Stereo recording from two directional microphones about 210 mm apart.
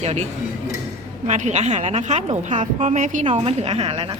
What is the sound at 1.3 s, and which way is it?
A woman's voice, 35° right (ahead or behind).